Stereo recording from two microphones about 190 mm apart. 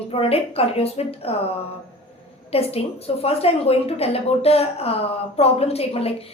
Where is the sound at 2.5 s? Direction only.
30° left (ahead or behind).